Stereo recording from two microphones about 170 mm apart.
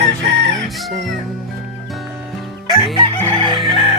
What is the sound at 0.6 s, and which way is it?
Chicken, centre (ahead or behind).